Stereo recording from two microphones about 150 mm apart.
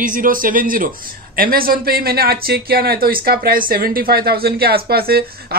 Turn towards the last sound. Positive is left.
turn(degrees=-90)